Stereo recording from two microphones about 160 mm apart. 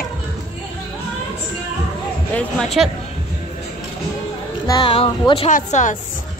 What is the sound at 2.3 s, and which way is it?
Speech, 5° left (ahead or behind).